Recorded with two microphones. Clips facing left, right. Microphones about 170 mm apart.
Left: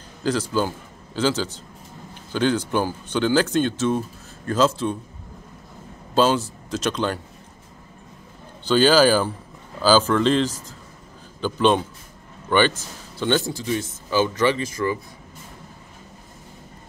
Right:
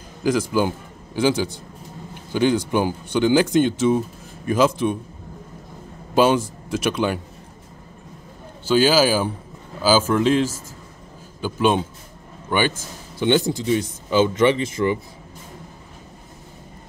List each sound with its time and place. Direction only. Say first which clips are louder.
0.2 s a man's voice: right 3 dB; 10° right (ahead or behind)
6.1 s speech: right 2 dB; 10° right (ahead or behind)
8.6 s a man's voice: left 1 dB; 5° right (ahead or behind); by 15.0 s 25° right (ahead or behind)